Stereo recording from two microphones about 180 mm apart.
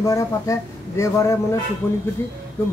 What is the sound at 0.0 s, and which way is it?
Speech, 20° left (ahead or behind).